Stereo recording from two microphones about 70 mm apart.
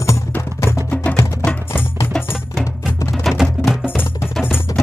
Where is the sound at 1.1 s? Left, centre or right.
Centre.